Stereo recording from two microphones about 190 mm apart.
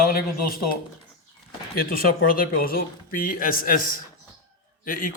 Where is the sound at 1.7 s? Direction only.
50° left (ahead or behind).